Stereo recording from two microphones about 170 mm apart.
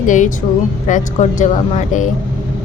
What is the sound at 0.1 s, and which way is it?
Speech, 50° left (ahead or behind).